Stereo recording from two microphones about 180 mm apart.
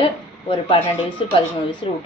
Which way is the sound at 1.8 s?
30° left (ahead or behind).